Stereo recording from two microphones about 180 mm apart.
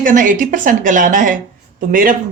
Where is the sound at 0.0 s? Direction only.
45° right (ahead or behind).